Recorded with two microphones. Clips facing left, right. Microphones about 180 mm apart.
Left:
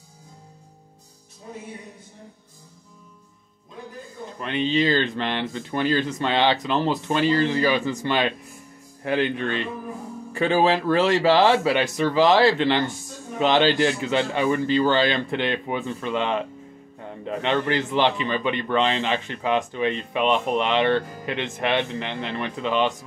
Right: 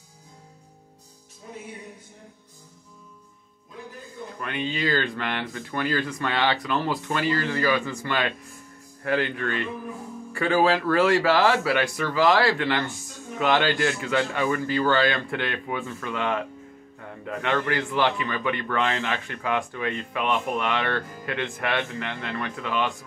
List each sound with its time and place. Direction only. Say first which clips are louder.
4.4 s a man's voice: left 6 dB; 25° left (ahead or behind)